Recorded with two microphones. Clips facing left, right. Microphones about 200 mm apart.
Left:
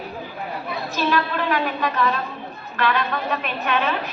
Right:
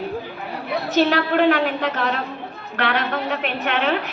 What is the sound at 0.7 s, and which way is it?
A woman's voice, 70° right (ahead or behind).